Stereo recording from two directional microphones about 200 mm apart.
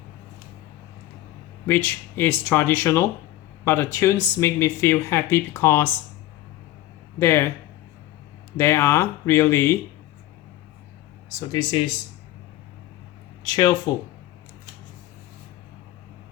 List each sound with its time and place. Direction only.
1.6 s speech: 10° left (ahead or behind)
7.2 s speech: 15° left (ahead or behind)
8.5 s speech: 10° left (ahead or behind)
11.3 s speech: 20° left (ahead or behind)
13.4 s speech: 20° left (ahead or behind)